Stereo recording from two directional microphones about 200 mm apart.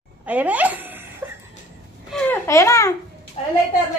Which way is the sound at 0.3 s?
5° right (ahead or behind).